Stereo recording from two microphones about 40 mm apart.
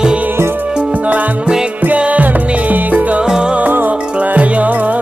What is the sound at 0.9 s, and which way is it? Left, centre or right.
Music, right.